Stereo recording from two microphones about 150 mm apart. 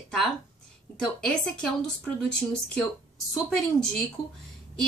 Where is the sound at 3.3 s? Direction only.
Centre (ahead or behind).